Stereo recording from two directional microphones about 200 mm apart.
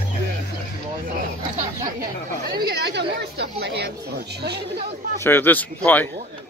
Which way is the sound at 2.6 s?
55° right (ahead or behind).